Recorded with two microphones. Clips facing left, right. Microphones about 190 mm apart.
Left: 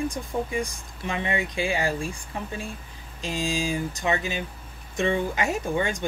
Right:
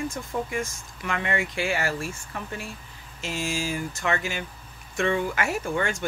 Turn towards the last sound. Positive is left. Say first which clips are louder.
# left 1 dB
turn(degrees=15)  # may be behind; listen again after turning